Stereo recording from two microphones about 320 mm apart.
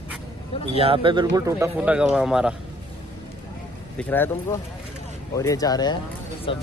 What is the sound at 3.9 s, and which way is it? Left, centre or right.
Speech, centre.